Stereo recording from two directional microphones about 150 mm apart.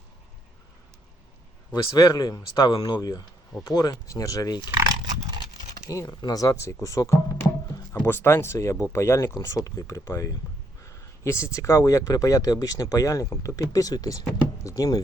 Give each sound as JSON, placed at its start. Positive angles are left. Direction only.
{"t": 1.7, "sound": "speech", "side_deg": 25}
{"t": 4.8, "sound": "pig", "side_deg": -25}
{"t": 5.8, "sound": "speech", "side_deg": 20}
{"t": 6.8, "sound": "music", "side_deg": 20}
{"t": 7.9, "sound": "speech", "side_deg": 15}